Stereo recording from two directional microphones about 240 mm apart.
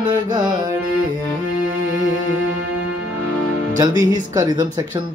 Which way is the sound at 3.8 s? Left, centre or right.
Centre.